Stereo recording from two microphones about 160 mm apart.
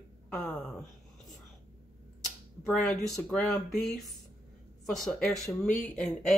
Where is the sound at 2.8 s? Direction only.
Centre (ahead or behind).